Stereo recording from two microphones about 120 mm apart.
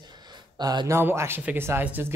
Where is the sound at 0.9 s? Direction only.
20° right (ahead or behind).